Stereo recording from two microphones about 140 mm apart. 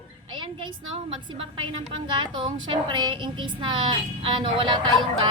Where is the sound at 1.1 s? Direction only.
40° right (ahead or behind).